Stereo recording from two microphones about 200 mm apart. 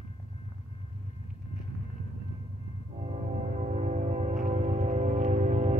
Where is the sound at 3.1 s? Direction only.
35° right (ahead or behind).